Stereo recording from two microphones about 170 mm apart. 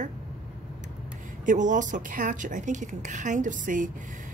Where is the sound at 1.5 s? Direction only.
50° right (ahead or behind).